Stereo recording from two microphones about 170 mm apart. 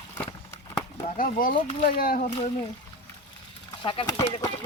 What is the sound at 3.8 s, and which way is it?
Speech, 30° left (ahead or behind).